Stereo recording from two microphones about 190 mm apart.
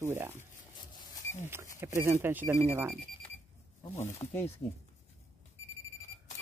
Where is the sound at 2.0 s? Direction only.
15° right (ahead or behind).